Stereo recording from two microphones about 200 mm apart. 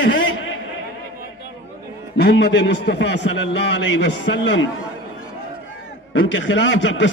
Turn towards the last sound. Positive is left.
turn(degrees=65)  # may be behind; listen again after turning